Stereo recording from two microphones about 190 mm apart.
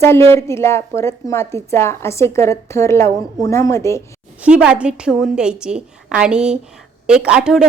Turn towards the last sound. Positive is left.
turn(degrees=-5)  # may be behind; listen again after turning